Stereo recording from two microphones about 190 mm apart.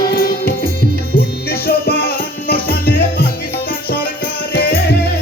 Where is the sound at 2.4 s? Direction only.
50° left (ahead or behind).